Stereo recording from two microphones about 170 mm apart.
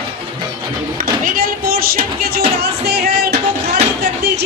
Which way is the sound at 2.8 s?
70° right (ahead or behind).